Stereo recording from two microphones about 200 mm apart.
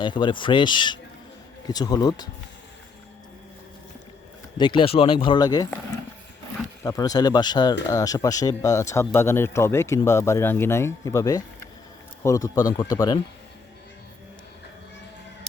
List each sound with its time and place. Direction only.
0.0 s speech: 25° left (ahead or behind)
4.5 s speech: 25° left (ahead or behind)
6.8 s speech: 20° left (ahead or behind)